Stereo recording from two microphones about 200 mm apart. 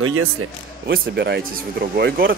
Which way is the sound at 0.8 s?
55° right (ahead or behind).